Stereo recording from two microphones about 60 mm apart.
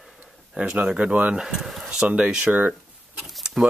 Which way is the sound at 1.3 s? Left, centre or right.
Centre.